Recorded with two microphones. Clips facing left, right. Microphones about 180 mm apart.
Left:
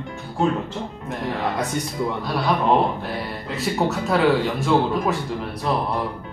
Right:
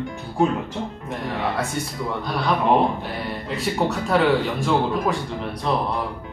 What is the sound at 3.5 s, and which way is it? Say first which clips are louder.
Speech: left 1 dB; centre (ahead or behind).